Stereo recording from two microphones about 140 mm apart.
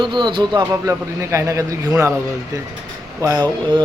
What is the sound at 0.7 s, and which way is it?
A man's voice, 20° right (ahead or behind).